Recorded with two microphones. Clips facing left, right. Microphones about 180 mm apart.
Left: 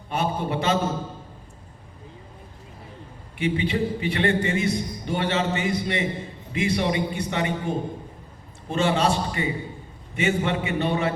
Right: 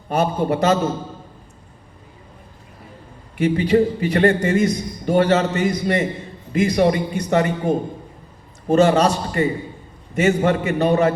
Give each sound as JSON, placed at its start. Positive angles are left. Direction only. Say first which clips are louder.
{"t": 0.1, "sound": "a man's voice", "louder": "right 6 dB", "side_deg": -40}
{"t": 3.3, "sound": "a man's voice", "louder": "right 8 dB", "side_deg": -40}